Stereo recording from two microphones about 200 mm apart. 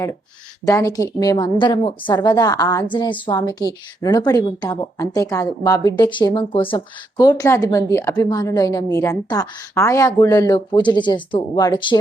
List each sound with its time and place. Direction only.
0.6 s a woman's voice: 15° left (ahead or behind)